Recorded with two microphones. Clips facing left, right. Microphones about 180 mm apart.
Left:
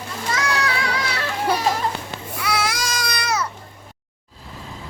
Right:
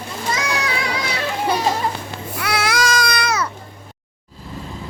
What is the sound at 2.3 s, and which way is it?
Babbling, 70° right (ahead or behind).